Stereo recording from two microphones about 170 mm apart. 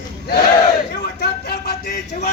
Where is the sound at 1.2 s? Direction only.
70° left (ahead or behind).